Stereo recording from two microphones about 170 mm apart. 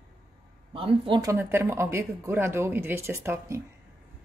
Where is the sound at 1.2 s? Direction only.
15° right (ahead or behind).